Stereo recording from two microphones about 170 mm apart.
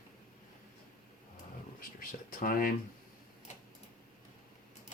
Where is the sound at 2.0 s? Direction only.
55° left (ahead or behind).